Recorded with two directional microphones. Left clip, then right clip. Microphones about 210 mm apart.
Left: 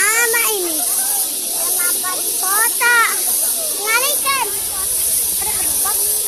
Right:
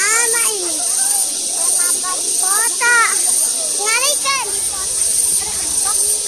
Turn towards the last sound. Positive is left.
turn(degrees=-45)  # may be behind; listen again after turning